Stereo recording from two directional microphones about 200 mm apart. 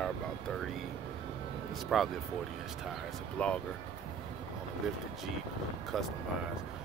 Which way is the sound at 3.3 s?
5° left (ahead or behind).